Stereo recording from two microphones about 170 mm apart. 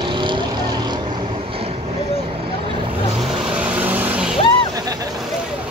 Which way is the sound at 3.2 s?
5° right (ahead or behind).